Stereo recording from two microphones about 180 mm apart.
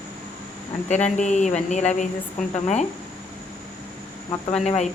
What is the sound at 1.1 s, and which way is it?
A woman's voice, 40° left (ahead or behind).